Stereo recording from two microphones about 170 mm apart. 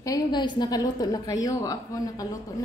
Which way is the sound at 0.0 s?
25° left (ahead or behind).